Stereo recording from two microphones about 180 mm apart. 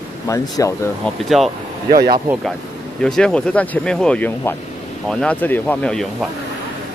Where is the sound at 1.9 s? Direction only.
60° right (ahead or behind).